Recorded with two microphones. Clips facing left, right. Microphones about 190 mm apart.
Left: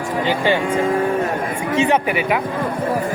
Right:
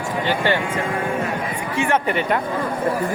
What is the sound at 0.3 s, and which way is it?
Speech, 15° left (ahead or behind).